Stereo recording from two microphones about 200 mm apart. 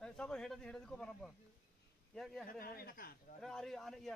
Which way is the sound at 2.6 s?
45° left (ahead or behind).